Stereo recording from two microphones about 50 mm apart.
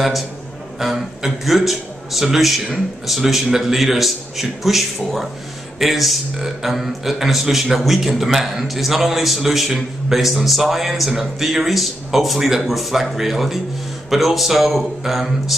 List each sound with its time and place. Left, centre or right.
0.7 s a man's voice: centre